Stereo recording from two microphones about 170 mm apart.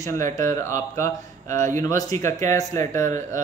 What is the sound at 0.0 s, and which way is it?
Speech, 20° left (ahead or behind).